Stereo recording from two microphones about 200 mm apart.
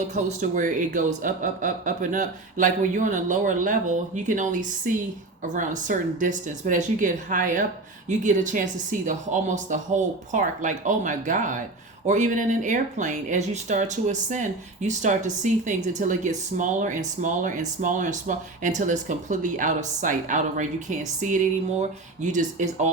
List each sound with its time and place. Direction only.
0.1 s speech: 40° right (ahead or behind)